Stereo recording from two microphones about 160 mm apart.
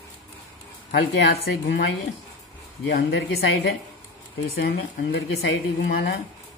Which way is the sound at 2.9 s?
80° left.